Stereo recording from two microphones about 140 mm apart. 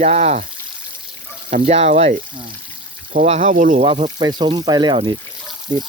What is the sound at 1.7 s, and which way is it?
Speech, 50° right (ahead or behind).